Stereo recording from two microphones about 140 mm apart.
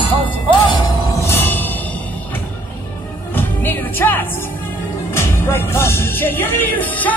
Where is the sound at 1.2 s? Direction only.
15° left (ahead or behind).